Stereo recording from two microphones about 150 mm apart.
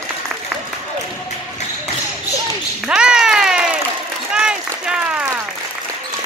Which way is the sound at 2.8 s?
5° right (ahead or behind).